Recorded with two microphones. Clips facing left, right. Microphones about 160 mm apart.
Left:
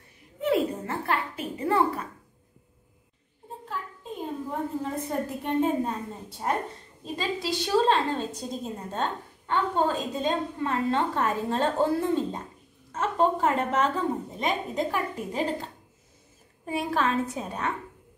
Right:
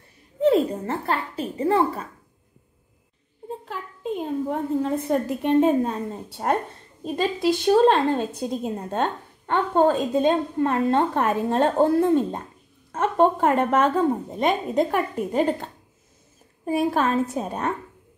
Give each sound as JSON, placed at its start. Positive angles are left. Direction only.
{"t": 0.4, "sound": "a woman's voice", "side_deg": -30}
{"t": 3.6, "sound": "a woman's voice", "side_deg": -80}
{"t": 7.2, "sound": "a woman's voice", "side_deg": -50}
{"t": 16.6, "sound": "a woman's voice", "side_deg": -45}